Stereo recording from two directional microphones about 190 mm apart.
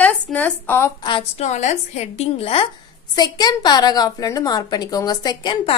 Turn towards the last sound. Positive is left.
turn(degrees=20)  # may be behind; listen again after turning